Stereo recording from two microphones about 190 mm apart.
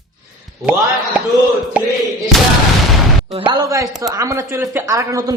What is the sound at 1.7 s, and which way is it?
Music, 5° right (ahead or behind).